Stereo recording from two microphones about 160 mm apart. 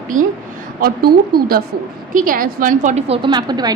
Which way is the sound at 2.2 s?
60° right (ahead or behind).